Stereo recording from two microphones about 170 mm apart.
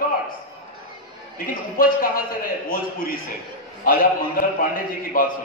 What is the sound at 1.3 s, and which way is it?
A man's voice, 55° left (ahead or behind).